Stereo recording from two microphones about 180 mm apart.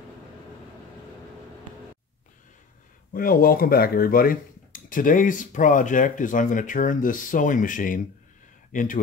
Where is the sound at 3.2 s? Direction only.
55° left (ahead or behind).